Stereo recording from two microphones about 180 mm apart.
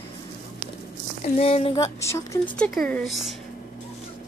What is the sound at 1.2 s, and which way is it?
Speech, 35° left (ahead or behind).